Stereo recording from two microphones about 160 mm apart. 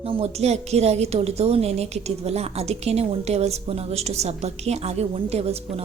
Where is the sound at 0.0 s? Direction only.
40° right (ahead or behind).